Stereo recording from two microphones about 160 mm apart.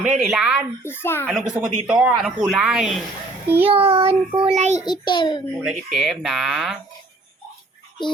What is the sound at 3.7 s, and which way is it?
Child singing, 35° right (ahead or behind).